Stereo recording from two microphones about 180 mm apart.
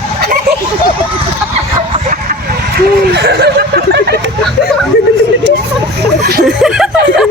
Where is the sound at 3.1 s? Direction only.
65° right (ahead or behind).